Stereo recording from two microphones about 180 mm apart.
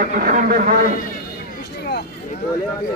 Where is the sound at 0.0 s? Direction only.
50° right (ahead or behind).